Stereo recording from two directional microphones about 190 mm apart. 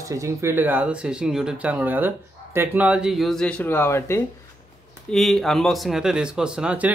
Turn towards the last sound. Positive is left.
turn(degrees=-5)  # may be behind; listen again after turning